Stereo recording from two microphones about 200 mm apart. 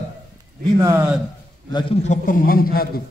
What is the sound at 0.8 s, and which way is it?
Speech, 10° right (ahead or behind).